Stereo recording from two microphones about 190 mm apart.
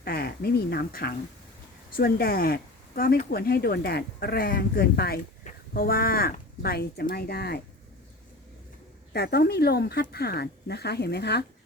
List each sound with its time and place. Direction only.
0.0 s speech: 55° left (ahead or behind)
9.1 s speech: 60° left (ahead or behind)